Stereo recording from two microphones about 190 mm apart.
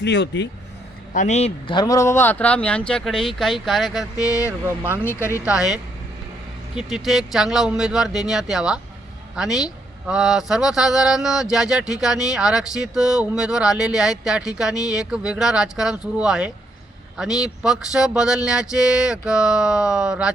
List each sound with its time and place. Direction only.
0.0 s speech: 65° left (ahead or behind)
1.1 s speech: 40° left (ahead or behind); by 4.3 s centre (ahead or behind)
4.3 s speech: 15° left (ahead or behind)
4.6 s speech: 10° right (ahead or behind)
5.0 s speech: 15° left (ahead or behind)
5.5 s speech: 5° right (ahead or behind)
6.7 s speech: centre (ahead or behind)